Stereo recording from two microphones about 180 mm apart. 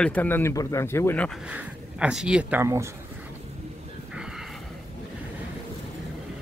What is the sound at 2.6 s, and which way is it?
Speech, 15° right (ahead or behind).